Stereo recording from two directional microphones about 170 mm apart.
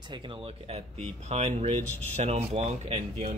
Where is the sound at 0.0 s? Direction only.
30° right (ahead or behind).